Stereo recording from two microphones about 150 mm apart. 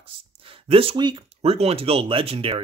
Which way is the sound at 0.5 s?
40° right (ahead or behind).